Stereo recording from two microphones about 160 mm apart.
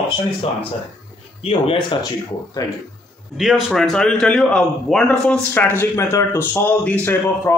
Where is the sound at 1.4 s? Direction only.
35° left (ahead or behind).